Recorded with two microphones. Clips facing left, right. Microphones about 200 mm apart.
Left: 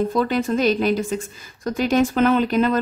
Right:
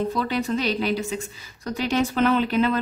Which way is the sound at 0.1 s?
50° left (ahead or behind).